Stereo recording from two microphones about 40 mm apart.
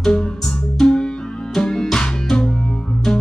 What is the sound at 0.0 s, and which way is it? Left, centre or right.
Music, centre.